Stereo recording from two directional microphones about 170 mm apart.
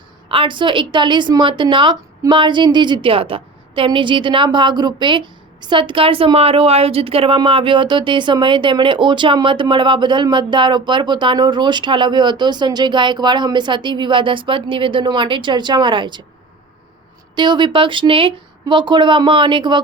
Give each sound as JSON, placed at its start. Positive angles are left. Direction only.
{"t": 0.3, "sound": "a woman's voice", "side_deg": -30}
{"t": 17.3, "sound": "a woman's voice", "side_deg": -25}